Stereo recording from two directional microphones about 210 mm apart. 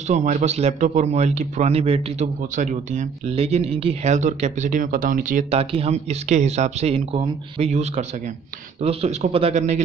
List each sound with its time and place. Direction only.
0.1 s speech: 35° right (ahead or behind)